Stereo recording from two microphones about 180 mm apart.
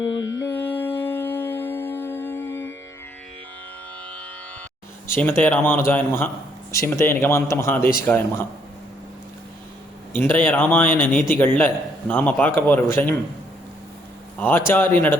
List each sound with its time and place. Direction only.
0.0 s mantra: 90° left
0.3 s mantra: 15° left (ahead or behind)
5.0 s a man's voice: 15° left (ahead or behind)
10.1 s a man's voice: 10° left (ahead or behind)
14.3 s a man's voice: 10° left (ahead or behind)